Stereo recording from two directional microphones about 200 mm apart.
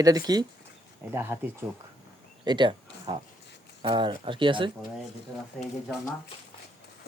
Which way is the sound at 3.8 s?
25° right (ahead or behind).